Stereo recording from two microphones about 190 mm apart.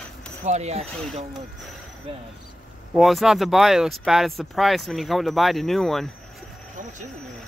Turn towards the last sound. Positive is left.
turn(degrees=0)  # may be behind; listen again after turning